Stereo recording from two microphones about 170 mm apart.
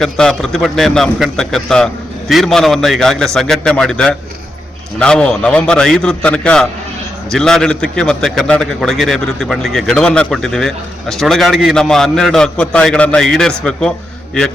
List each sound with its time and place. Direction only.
0.0 s a man's voice: 5° left (ahead or behind)